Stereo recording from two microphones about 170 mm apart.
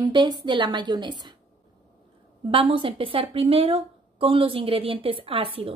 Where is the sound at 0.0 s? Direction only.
25° right (ahead or behind).